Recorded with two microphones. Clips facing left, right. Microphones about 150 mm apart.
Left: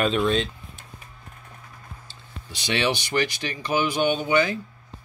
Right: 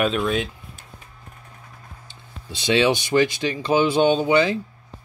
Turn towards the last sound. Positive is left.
turn(degrees=-25)  # may be behind; listen again after turning